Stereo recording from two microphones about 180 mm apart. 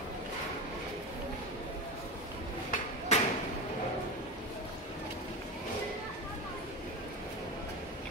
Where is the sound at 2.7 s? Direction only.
40° left (ahead or behind).